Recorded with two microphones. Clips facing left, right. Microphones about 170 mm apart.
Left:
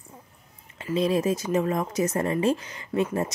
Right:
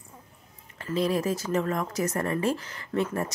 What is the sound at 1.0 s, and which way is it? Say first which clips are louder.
Speech: left 3 dB; 20° left (ahead or behind).